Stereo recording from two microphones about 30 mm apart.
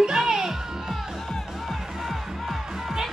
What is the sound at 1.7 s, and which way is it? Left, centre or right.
Music, centre.